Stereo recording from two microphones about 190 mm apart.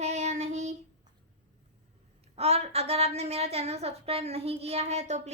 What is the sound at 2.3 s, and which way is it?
A woman's voice, 35° right (ahead or behind).